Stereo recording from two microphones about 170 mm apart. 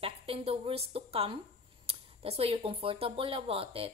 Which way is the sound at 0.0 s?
35° right (ahead or behind).